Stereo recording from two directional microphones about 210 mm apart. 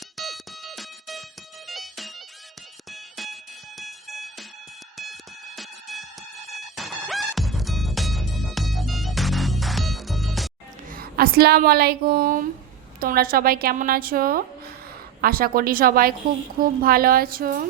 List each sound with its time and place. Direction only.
0.2 s music: centre (ahead or behind)
2.9 s fire alarm: centre (ahead or behind)
3.8 s music: centre (ahead or behind)
10.8 s a woman's voice: 45° right (ahead or behind)